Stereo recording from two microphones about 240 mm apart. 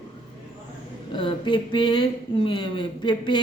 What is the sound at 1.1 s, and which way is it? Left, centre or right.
Speech, left.